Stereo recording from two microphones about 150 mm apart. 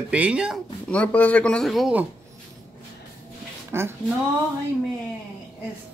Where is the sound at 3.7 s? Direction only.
15° right (ahead or behind).